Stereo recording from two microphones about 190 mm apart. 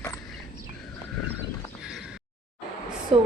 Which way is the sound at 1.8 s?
Centre (ahead or behind).